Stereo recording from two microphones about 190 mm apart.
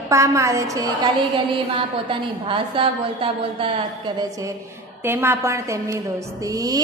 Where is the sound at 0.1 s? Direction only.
15° right (ahead or behind).